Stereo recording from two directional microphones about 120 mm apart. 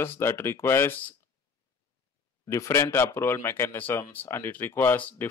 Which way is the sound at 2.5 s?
25° left (ahead or behind).